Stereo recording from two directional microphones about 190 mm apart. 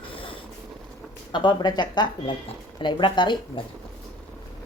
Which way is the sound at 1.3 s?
25° left (ahead or behind).